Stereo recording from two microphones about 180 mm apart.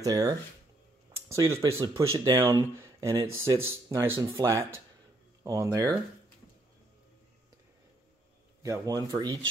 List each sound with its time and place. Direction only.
0.0 s speech: 20° right (ahead or behind)
8.6 s speech: 20° right (ahead or behind)